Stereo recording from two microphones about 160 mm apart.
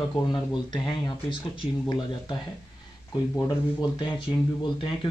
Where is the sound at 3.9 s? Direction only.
30° left (ahead or behind).